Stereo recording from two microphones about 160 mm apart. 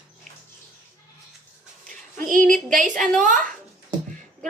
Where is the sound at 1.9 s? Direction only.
55° right (ahead or behind).